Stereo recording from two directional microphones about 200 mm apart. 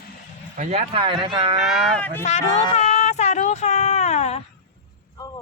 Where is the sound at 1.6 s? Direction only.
5° left (ahead or behind).